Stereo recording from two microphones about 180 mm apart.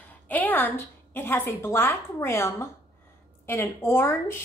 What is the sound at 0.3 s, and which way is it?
A woman's voice, 10° left (ahead or behind).